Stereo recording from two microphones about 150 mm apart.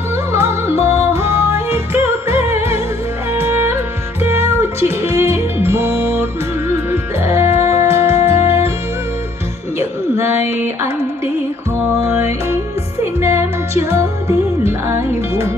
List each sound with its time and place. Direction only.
0.3 s music: 15° right (ahead or behind)
8.2 s music: 45° left (ahead or behind)
9.8 s music: 15° right (ahead or behind)
12.1 s music: 15° right (ahead or behind)